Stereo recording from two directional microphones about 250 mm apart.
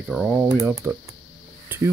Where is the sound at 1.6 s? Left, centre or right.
Centre.